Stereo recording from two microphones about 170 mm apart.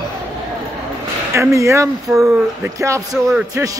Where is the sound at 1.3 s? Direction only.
15° right (ahead or behind).